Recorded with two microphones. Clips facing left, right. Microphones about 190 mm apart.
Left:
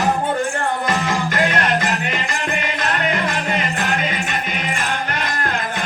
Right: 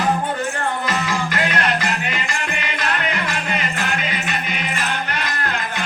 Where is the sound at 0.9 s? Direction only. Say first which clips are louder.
Left 2 dB; 50° left (ahead or behind).